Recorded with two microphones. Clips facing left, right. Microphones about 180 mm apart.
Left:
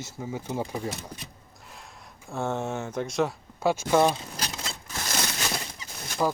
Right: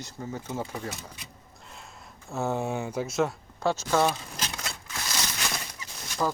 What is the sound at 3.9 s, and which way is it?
Speech, 15° left (ahead or behind).